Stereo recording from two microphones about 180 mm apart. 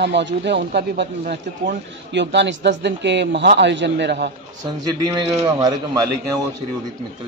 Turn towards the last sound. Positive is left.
turn(degrees=-20)  # may be behind; listen again after turning